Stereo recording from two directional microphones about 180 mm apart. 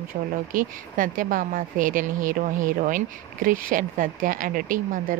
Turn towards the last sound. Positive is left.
turn(degrees=-50)  # may be behind; listen again after turning